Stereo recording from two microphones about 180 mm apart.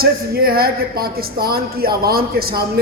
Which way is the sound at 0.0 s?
55° right (ahead or behind).